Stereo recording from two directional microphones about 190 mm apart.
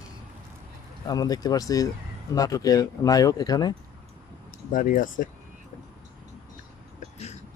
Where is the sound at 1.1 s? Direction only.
20° left (ahead or behind).